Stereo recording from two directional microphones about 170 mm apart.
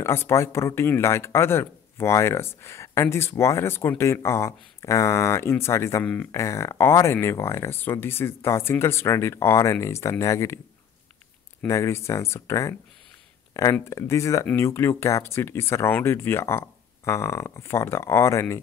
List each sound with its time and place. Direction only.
0.0 s speech: 15° left (ahead or behind)
11.6 s speech: 15° left (ahead or behind)